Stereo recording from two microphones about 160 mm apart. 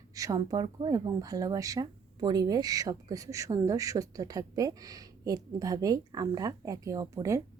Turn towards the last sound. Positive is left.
turn(degrees=-20)  # may be behind; listen again after turning